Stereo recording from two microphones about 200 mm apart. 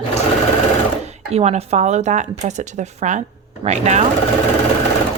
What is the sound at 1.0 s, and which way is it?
Speech, 30° right (ahead or behind).